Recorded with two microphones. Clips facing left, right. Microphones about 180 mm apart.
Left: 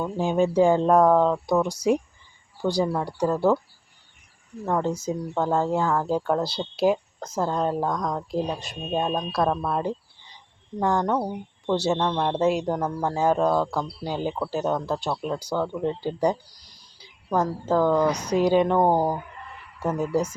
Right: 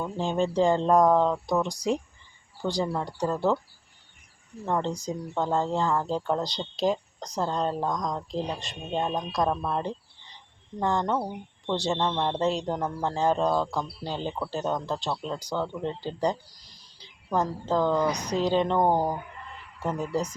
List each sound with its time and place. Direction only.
0.0 s speech: 10° left (ahead or behind)
4.6 s speech: 5° left (ahead or behind)
19.8 s speech: 10° left (ahead or behind)